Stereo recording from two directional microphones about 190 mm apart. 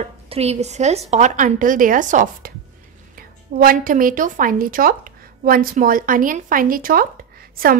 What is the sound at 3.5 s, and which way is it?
A woman's voice, 45° right (ahead or behind).